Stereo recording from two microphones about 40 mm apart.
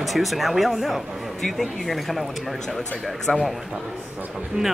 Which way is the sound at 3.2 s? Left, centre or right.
Centre.